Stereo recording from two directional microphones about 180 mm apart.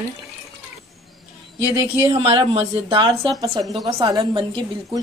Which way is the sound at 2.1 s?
30° right (ahead or behind).